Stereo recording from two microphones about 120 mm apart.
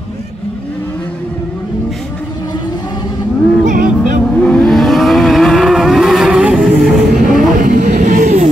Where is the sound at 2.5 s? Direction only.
40° left (ahead or behind).